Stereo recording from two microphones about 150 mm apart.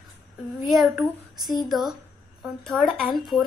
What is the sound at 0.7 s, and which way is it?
A woman's voice, 5° right (ahead or behind).